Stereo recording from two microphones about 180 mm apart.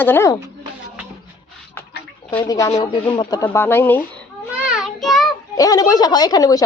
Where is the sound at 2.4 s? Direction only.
20° left (ahead or behind).